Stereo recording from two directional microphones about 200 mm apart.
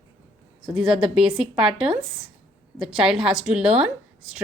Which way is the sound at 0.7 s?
5° right (ahead or behind).